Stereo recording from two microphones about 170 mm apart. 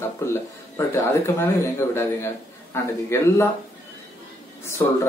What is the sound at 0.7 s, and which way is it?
A man's voice, 15° left (ahead or behind).